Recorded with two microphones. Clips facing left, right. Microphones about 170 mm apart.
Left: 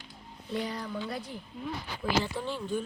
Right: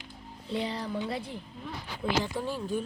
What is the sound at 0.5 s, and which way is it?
Speech, 25° right (ahead or behind).